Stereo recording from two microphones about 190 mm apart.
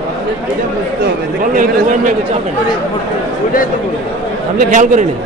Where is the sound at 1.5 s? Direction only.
45° right (ahead or behind).